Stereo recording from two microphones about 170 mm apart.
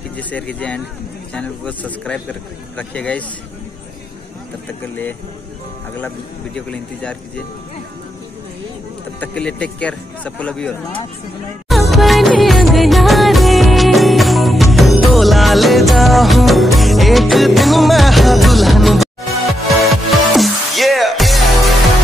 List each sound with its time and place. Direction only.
0.2 s speech: 10° left (ahead or behind)
5.9 s speech: 10° left (ahead or behind)
9.2 s speech: 5° left (ahead or behind)
11.7 s music: centre (ahead or behind)